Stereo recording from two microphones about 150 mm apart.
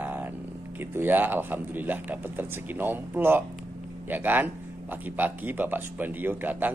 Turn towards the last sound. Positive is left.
turn(degrees=-10)  # may be behind; listen again after turning